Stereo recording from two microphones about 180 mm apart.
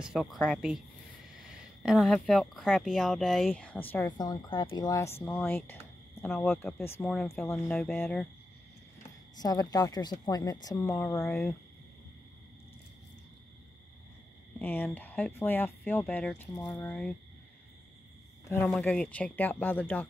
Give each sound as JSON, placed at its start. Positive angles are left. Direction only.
{"t": 0.0, "sound": "speech", "side_deg": 0}
{"t": 4.2, "sound": "speech", "side_deg": 25}
{"t": 9.4, "sound": "speech", "side_deg": 20}
{"t": 14.6, "sound": "speech", "side_deg": 10}
{"t": 18.5, "sound": "speech", "side_deg": 5}